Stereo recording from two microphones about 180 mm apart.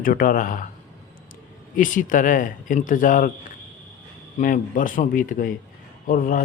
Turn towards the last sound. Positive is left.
turn(degrees=50)  # may be behind; listen again after turning